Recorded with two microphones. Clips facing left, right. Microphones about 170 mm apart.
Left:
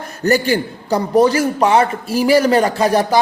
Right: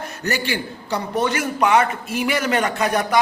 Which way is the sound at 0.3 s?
40° left (ahead or behind).